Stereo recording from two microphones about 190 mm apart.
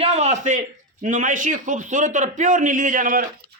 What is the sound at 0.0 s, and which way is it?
A man's voice, 35° right (ahead or behind).